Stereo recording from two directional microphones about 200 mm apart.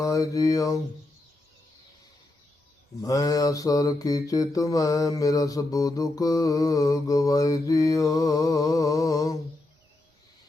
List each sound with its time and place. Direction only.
0.0 s mantra: 15° left (ahead or behind)
3.0 s mantra: 15° left (ahead or behind)